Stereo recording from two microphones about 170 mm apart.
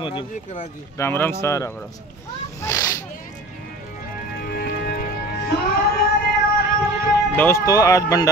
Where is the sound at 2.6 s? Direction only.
15° left (ahead or behind).